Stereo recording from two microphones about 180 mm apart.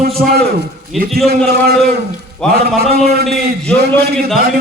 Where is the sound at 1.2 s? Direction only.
60° right (ahead or behind).